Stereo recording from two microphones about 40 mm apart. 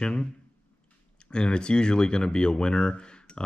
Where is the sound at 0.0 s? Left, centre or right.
Centre.